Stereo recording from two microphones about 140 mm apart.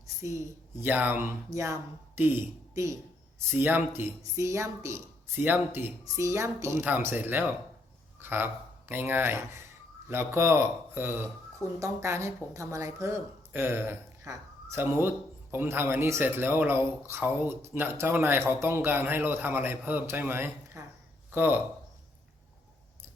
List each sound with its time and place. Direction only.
0.2 s a woman's voice: 20° right (ahead or behind)